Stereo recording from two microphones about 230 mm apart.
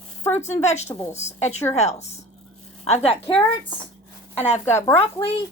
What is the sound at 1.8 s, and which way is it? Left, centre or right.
A woman's voice, left.